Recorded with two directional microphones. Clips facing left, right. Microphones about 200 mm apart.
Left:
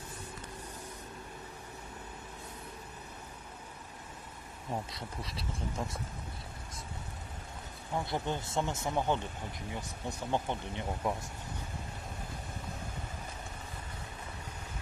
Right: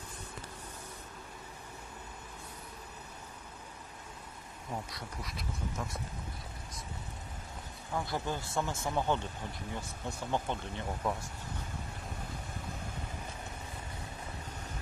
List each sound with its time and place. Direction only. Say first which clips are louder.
4.9 s speech: left 1 dB; 30° left (ahead or behind)
7.9 s speech: left 1 dB; 20° left (ahead or behind)